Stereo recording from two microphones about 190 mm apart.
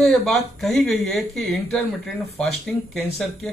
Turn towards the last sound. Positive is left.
turn(degrees=0)  # may be behind; listen again after turning